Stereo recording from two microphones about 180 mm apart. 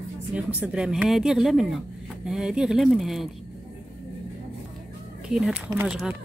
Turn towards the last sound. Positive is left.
turn(degrees=-10)  # may be behind; listen again after turning